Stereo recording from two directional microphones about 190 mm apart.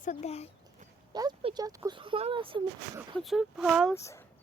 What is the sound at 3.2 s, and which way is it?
Speech, centre (ahead or behind).